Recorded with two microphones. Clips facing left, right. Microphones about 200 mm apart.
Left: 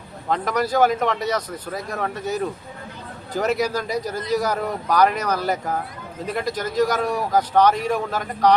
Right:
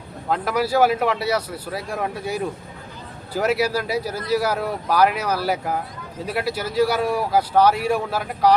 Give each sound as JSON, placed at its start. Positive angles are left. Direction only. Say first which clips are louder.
{"t": 0.3, "sound": "a man's voice", "louder": "even", "side_deg": -5}